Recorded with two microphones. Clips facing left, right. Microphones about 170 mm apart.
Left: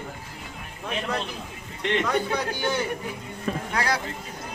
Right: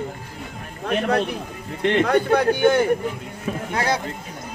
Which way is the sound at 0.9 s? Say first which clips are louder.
Right 9 dB; 65° right (ahead or behind).